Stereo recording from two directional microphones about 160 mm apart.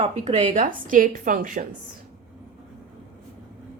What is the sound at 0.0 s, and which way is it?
Speech, 40° right (ahead or behind).